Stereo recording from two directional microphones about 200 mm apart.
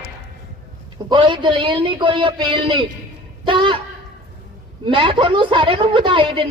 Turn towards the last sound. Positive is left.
turn(degrees=-25)  # may be behind; listen again after turning